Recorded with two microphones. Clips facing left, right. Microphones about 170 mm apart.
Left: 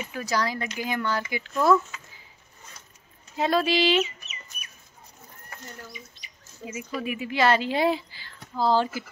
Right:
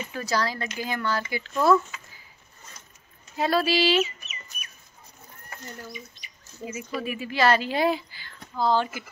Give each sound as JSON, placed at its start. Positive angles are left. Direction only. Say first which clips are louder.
{"t": 0.0, "sound": "speech", "louder": "even", "side_deg": 15}
{"t": 1.5, "sound": "speech", "louder": "even", "side_deg": -5}
{"t": 3.3, "sound": "speech", "louder": "even", "side_deg": 20}
{"t": 6.6, "sound": "speech", "louder": "even", "side_deg": 15}